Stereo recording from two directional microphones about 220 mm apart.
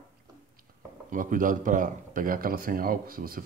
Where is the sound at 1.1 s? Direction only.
35° right (ahead or behind).